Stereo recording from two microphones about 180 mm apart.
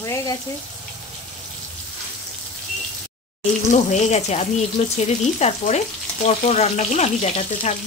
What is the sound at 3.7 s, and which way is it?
Speech, 40° left (ahead or behind).